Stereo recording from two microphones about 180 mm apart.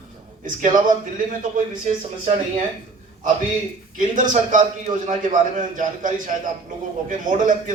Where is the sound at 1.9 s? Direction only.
45° right (ahead or behind).